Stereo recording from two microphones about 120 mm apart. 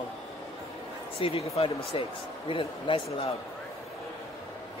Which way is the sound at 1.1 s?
55° left (ahead or behind).